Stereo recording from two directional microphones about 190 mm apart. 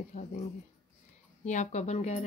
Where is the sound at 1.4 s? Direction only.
40° left (ahead or behind).